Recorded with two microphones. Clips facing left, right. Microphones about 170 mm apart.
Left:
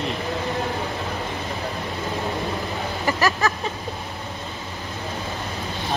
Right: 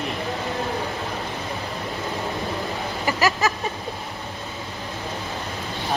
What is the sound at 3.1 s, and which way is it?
Vehicle, 15° right (ahead or behind).